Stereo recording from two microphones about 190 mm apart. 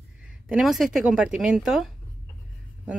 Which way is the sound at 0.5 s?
Centre (ahead or behind).